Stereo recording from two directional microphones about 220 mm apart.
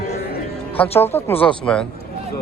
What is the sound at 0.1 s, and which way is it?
Music, 45° left (ahead or behind).